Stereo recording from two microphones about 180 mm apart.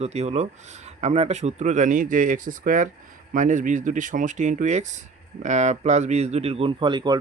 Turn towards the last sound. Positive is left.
turn(degrees=-25)  # may be behind; listen again after turning